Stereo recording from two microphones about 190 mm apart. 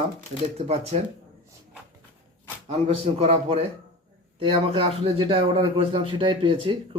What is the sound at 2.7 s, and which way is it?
Speech, 35° right (ahead or behind).